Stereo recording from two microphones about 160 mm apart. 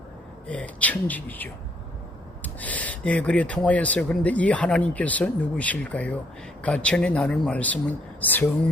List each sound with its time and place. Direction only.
0.4 s speech: 10° left (ahead or behind)